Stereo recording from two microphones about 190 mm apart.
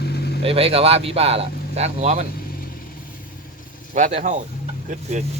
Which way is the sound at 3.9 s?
40° right (ahead or behind).